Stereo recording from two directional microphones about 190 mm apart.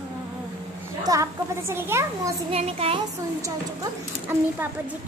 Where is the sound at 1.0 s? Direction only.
15° right (ahead or behind).